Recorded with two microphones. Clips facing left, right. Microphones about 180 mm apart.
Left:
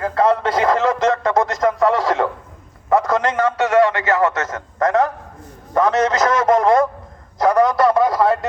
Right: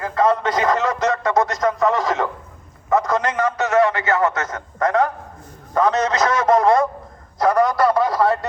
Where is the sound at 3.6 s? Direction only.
25° left (ahead or behind).